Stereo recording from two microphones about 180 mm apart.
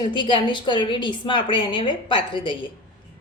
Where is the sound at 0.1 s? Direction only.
25° left (ahead or behind).